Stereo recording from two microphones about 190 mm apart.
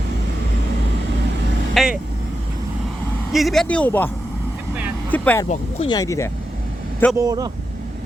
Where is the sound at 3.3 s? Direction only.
Centre (ahead or behind).